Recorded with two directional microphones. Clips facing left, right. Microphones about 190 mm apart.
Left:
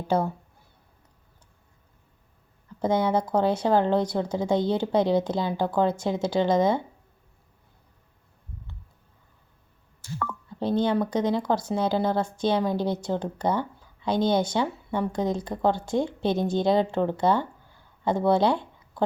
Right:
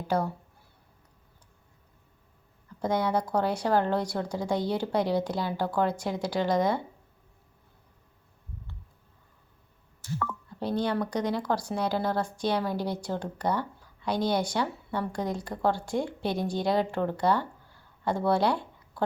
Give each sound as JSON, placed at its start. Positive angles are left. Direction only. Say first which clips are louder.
{"t": 0.1, "sound": "speech", "louder": "left 3 dB", "side_deg": 25}
{"t": 2.8, "sound": "speech", "louder": "left 4 dB", "side_deg": 25}
{"t": 10.6, "sound": "speech", "louder": "left 5 dB", "side_deg": 25}